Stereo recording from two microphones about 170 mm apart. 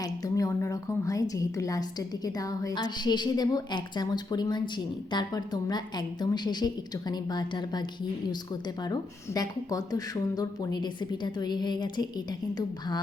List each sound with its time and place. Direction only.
0.0 s a woman's voice: 20° left (ahead or behind)